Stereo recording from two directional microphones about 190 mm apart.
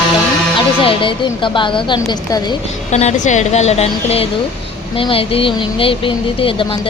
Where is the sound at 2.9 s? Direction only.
35° left (ahead or behind).